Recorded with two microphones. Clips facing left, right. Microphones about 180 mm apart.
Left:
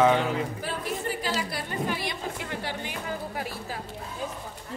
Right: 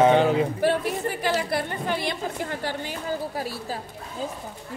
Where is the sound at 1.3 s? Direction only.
60° right (ahead or behind).